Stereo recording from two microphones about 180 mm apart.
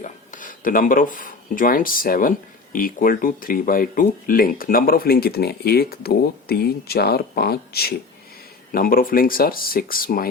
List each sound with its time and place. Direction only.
0.0 s speech: 45° left (ahead or behind)